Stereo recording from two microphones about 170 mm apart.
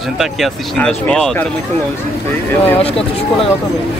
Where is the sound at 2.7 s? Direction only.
35° left (ahead or behind).